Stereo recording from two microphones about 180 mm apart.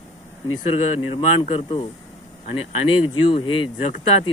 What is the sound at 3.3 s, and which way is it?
Speech, 30° left (ahead or behind).